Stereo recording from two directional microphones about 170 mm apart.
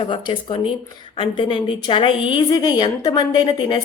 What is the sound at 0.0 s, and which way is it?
A woman's voice, 30° left (ahead or behind).